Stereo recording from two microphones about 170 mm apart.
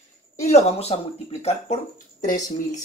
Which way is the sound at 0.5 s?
40° left (ahead or behind).